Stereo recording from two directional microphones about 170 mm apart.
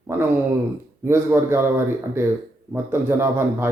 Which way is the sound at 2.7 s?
15° right (ahead or behind).